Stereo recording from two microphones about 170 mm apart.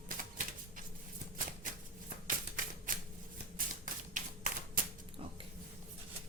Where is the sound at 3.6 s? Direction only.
50° right (ahead or behind).